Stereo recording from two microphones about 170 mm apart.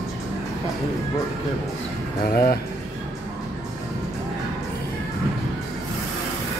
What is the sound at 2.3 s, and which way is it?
Speech, 60° left (ahead or behind).